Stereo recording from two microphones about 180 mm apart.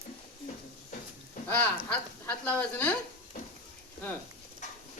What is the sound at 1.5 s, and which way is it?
Speech, 10° left (ahead or behind).